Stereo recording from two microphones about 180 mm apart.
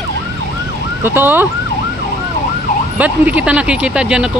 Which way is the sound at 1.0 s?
10° right (ahead or behind).